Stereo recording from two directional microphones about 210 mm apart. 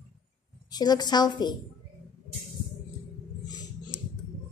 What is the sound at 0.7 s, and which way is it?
Speech, 20° left (ahead or behind).